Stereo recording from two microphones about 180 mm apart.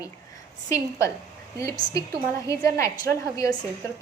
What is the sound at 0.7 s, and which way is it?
Speech, 15° left (ahead or behind).